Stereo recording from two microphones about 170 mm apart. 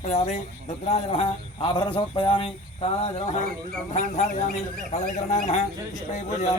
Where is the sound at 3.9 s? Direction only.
45° left (ahead or behind).